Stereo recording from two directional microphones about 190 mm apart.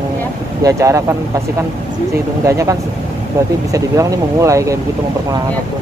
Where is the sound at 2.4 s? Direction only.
15° right (ahead or behind).